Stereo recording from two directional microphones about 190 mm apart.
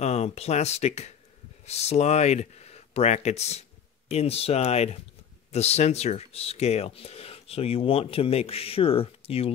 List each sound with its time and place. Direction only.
0.0 s speech: 35° left (ahead or behind)